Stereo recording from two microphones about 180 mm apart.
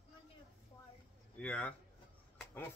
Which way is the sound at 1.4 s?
5° left (ahead or behind).